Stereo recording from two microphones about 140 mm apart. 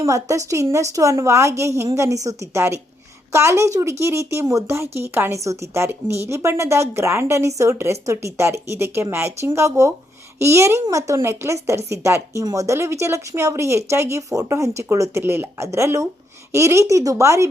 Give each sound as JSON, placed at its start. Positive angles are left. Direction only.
{"t": 0.0, "sound": "a woman's voice", "side_deg": -20}